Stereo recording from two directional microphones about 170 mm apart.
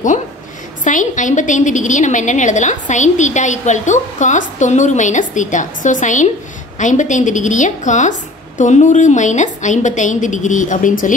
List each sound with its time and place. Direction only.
0.8 s a woman's voice: 50° left (ahead or behind)